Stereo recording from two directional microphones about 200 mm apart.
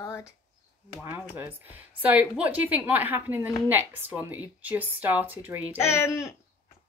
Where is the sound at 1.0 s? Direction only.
10° right (ahead or behind).